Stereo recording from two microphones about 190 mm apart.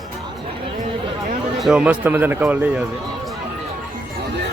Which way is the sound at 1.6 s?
5° right (ahead or behind).